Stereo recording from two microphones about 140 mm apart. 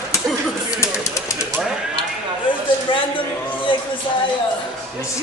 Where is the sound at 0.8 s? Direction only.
20° left (ahead or behind).